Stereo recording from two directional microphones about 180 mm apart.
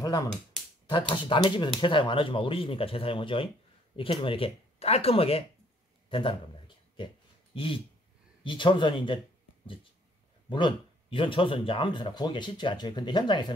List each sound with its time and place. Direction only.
0.0 s a man's voice: 20° left (ahead or behind)
7.5 s speech: 30° left (ahead or behind)
10.5 s speech: 25° left (ahead or behind)